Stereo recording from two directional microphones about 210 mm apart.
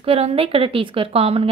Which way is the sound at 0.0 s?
30° right (ahead or behind).